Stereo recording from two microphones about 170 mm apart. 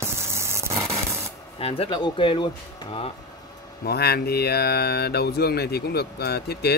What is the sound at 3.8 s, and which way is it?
Speech, 70° left (ahead or behind).